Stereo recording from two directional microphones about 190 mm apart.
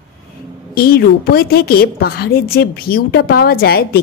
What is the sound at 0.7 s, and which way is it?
A woman's voice, 55° left (ahead or behind).